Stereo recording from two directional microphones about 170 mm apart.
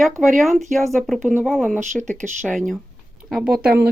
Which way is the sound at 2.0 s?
45° right (ahead or behind).